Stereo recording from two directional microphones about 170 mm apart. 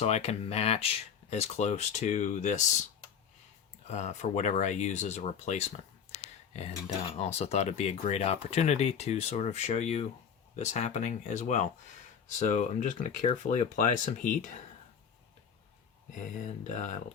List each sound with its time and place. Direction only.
0.0 s speech: 40° left (ahead or behind)
3.8 s speech: 40° left (ahead or behind)
16.7 s speech: 45° left (ahead or behind)